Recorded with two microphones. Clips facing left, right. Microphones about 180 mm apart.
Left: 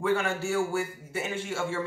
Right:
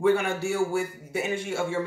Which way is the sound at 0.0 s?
15° right (ahead or behind).